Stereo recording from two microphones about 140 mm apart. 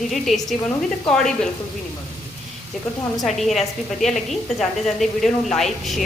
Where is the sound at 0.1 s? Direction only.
Centre (ahead or behind).